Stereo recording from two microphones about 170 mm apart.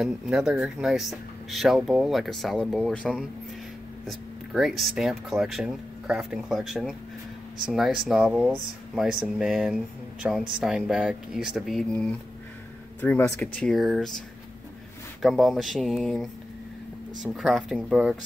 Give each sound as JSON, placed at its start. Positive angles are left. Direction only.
{"t": 0.0, "sound": "speech", "side_deg": -5}
{"t": 15.2, "sound": "speech", "side_deg": 0}